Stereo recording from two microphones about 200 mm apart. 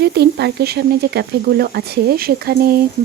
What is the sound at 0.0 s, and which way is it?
Speech, 55° right (ahead or behind).